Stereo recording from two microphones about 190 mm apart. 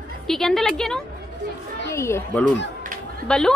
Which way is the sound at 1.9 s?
15° left (ahead or behind).